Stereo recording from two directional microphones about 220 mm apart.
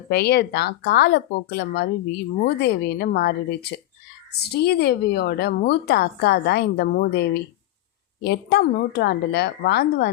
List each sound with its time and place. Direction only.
0.1 s a woman's voice: 45° left (ahead or behind)